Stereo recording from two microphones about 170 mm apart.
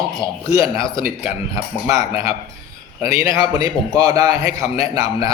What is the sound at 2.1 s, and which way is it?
Speech, 30° left (ahead or behind).